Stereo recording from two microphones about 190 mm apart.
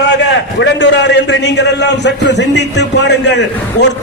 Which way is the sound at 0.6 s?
70° left (ahead or behind).